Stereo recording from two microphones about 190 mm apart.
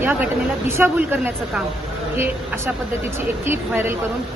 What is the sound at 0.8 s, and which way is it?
Speech, 10° right (ahead or behind).